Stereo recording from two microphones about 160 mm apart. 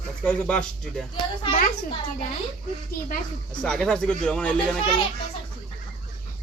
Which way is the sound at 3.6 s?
5° left (ahead or behind).